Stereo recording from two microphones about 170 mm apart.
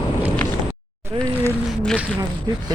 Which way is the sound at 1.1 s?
35° right (ahead or behind).